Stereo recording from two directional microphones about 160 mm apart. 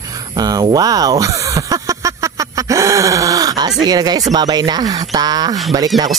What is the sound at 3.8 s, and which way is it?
Speech, 25° right (ahead or behind).